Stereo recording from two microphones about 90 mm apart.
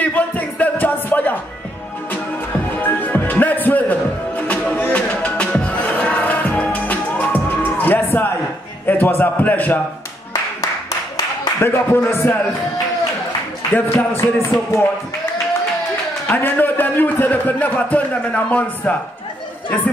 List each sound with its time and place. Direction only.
0.0 s music: 15° left (ahead or behind)
2.8 s music: 20° left (ahead or behind)
8.8 s a sound: 20° left (ahead or behind)
9.2 s a man's voice: 20° left (ahead or behind)
11.6 s a man's voice: 25° left (ahead or behind)
13.7 s a man's voice: 25° left (ahead or behind)
16.3 s a man's voice: 20° left (ahead or behind)